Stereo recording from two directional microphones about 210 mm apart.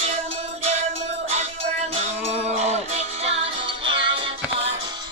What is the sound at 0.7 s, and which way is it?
Music, 30° right (ahead or behind).